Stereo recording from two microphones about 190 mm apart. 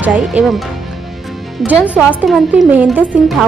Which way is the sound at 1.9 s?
5° right (ahead or behind).